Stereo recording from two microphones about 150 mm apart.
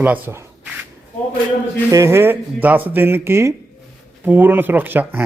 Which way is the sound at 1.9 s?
20° right (ahead or behind).